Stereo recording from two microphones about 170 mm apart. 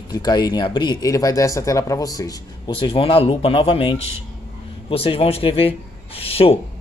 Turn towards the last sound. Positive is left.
turn(degrees=35)  # may be behind; listen again after turning